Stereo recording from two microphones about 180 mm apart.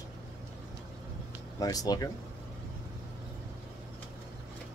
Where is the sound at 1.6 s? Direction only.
20° left (ahead or behind).